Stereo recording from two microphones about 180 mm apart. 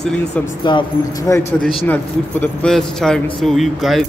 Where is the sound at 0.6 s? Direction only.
25° left (ahead or behind); by 4.0 s centre (ahead or behind).